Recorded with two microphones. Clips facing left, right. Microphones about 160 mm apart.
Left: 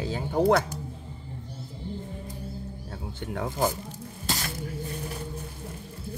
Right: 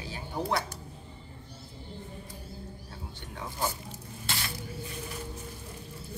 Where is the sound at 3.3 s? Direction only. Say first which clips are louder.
Left 7 dB; 55° left (ahead or behind).